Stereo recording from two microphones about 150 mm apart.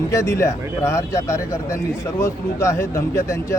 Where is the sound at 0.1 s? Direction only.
20° left (ahead or behind).